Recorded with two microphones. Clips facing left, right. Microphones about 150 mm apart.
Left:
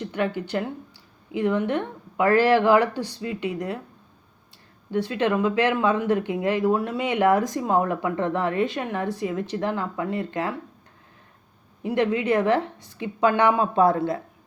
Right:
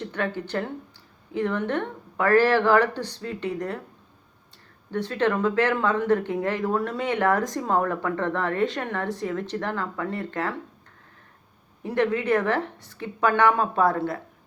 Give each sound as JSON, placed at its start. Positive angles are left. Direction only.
{"t": 0.1, "sound": "speech", "side_deg": 15}
{"t": 4.9, "sound": "speech", "side_deg": 15}
{"t": 11.8, "sound": "speech", "side_deg": 15}